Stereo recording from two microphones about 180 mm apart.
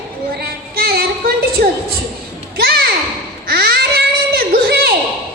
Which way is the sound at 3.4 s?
60° right (ahead or behind).